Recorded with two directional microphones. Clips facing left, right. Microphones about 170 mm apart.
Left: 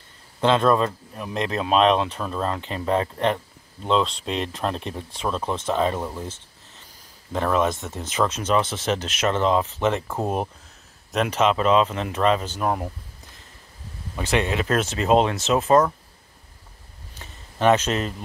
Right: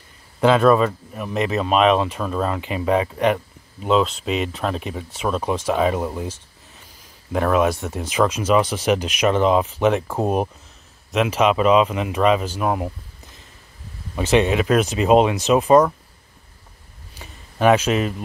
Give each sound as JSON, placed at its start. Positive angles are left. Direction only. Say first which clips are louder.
{"t": 0.4, "sound": "speech", "louder": "right 4 dB", "side_deg": -5}
{"t": 7.3, "sound": "speech", "louder": "right 4 dB", "side_deg": -10}
{"t": 11.1, "sound": "speech", "louder": "right 3 dB", "side_deg": -5}
{"t": 14.1, "sound": "speech", "louder": "right 6 dB", "side_deg": -20}
{"t": 17.2, "sound": "a sound", "louder": "right 3 dB", "side_deg": -10}